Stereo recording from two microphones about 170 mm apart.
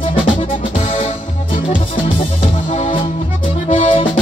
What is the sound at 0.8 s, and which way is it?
Music, 35° left (ahead or behind).